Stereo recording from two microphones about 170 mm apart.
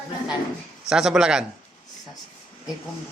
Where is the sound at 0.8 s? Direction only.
5° right (ahead or behind).